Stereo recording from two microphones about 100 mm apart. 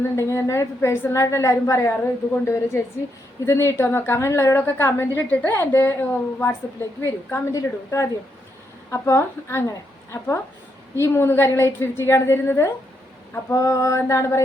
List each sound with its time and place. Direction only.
0.0 s a woman's voice: 30° left (ahead or behind)